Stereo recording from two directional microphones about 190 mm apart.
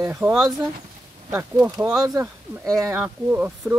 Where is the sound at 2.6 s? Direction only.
Centre (ahead or behind).